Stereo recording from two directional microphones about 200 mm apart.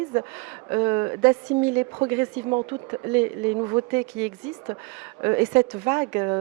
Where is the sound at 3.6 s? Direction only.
20° right (ahead or behind).